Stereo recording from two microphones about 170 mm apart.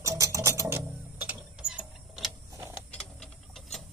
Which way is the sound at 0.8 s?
5° right (ahead or behind).